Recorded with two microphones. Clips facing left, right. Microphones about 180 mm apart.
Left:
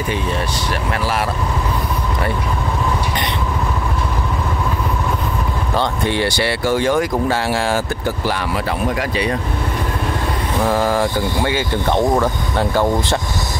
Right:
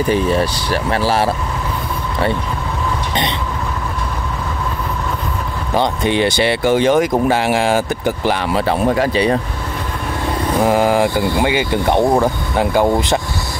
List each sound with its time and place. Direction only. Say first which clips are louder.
0.7 s speech: right 4 dB; 30° right (ahead or behind)
5.8 s speech: right 4 dB; 20° right (ahead or behind)
10.6 s speech: right 3 dB; 15° right (ahead or behind)